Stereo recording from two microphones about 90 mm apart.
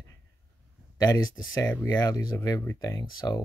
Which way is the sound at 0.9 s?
45° left (ahead or behind).